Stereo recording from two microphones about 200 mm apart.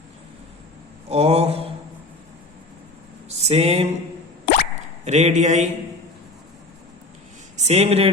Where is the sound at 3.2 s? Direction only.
30° right (ahead or behind).